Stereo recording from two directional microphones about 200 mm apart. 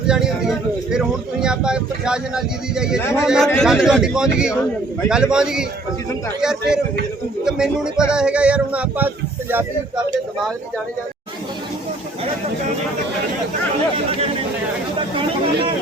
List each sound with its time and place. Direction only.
0.1 s speech: 5° right (ahead or behind)
3.0 s a man's voice: 15° left (ahead or behind)
3.2 s a man's voice: centre (ahead or behind)
13.9 s speech: 30° right (ahead or behind)
14.9 s chatter: 25° right (ahead or behind)